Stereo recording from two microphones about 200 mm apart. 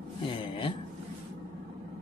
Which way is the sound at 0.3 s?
25° left (ahead or behind).